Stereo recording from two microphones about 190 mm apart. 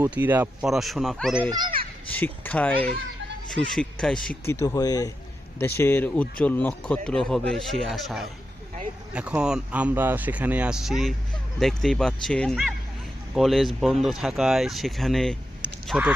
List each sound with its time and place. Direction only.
0.0 s speech: 10° right (ahead or behind)
1.5 s a child's voice: 20° right (ahead or behind)
2.0 s speech: 10° left (ahead or behind)
4.4 s speech: 15° left (ahead or behind); by 16.1 s 5° right (ahead or behind)